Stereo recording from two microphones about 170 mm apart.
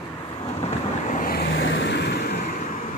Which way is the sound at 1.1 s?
60° left (ahead or behind).